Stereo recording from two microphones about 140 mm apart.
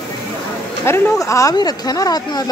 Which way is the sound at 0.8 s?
20° left (ahead or behind).